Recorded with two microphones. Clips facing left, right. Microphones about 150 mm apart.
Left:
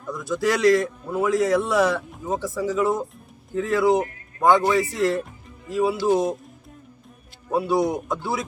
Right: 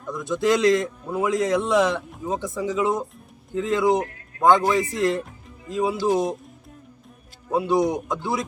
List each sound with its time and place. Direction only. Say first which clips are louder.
0.0 s a man's voice: right 1 dB; centre (ahead or behind)
0.3 s a man's voice: even; 20° right (ahead or behind)
2.0 s speech: even; centre (ahead or behind)
2.4 s a man's voice: left 2 dB; 20° right (ahead or behind)
3.9 s a sound: left 2 dB; centre (ahead or behind)
4.4 s a man's voice: even; 20° right (ahead or behind)
6.1 s speech: left 1 dB; centre (ahead or behind)
7.5 s a man's voice: even; 20° right (ahead or behind)
7.8 s speech: right 1 dB; centre (ahead or behind)
8.0 s a man's voice: even; 20° right (ahead or behind)